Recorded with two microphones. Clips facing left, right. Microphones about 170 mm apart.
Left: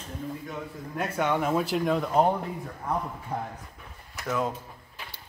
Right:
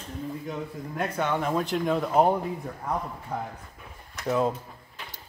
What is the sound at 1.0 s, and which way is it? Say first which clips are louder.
Speech: left 1 dB; 5° left (ahead or behind).